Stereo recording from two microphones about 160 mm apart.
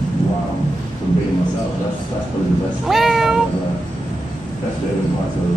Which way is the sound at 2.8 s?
Centre (ahead or behind).